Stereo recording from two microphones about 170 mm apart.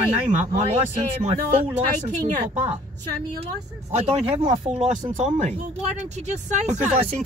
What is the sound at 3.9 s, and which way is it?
Speech, 40° right (ahead or behind).